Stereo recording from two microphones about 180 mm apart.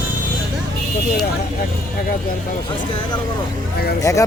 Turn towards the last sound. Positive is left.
turn(degrees=15)  # may be behind; listen again after turning